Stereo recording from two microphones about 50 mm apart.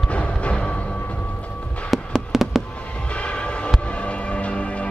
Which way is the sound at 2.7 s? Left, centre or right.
Left.